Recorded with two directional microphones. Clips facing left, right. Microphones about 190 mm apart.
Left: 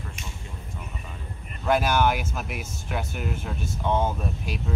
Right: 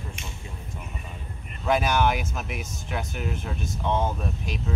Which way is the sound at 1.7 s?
Centre (ahead or behind).